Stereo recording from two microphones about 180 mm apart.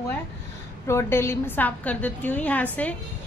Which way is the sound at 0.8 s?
15° left (ahead or behind).